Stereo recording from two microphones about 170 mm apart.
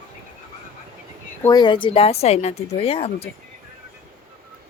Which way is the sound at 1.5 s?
25° left (ahead or behind).